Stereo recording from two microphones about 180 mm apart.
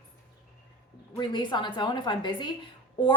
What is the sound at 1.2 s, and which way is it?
A woman's voice, 25° left (ahead or behind).